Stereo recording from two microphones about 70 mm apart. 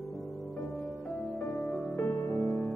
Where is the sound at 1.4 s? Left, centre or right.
Centre.